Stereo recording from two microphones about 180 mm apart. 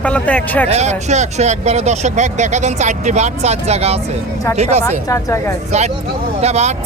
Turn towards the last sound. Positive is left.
turn(degrees=-35)  # may be behind; listen again after turning